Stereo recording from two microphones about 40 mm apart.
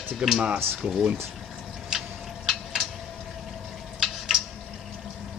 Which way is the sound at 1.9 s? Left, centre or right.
Centre.